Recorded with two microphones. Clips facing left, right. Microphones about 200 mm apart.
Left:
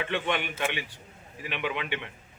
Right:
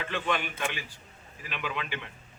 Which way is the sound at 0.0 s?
20° left (ahead or behind).